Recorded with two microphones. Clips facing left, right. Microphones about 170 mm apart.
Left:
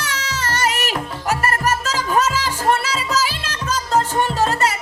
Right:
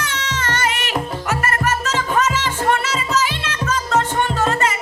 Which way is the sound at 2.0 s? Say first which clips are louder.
Even; 35° left (ahead or behind).